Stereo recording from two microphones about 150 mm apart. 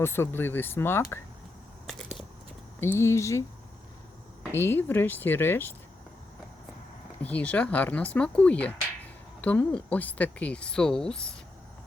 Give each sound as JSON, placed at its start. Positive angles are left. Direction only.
{"t": 0.0, "sound": "speech", "side_deg": 15}
{"t": 1.9, "sound": "a sound", "side_deg": 0}
{"t": 2.8, "sound": "speech", "side_deg": 15}
{"t": 4.5, "sound": "speech", "side_deg": 15}
{"t": 7.2, "sound": "speech", "side_deg": 10}